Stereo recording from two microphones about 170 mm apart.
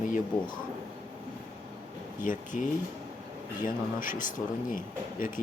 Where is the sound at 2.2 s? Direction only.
50° left (ahead or behind).